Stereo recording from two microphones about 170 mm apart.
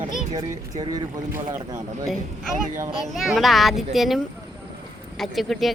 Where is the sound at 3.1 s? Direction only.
Centre (ahead or behind).